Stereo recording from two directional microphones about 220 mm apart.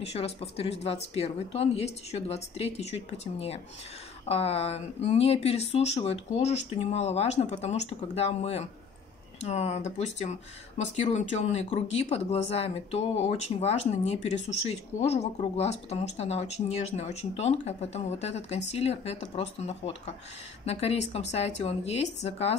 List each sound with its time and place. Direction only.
0.0 s speech: 25° left (ahead or behind)